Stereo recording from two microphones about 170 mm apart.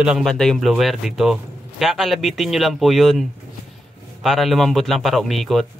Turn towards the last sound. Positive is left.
turn(degrees=0)  # may be behind; listen again after turning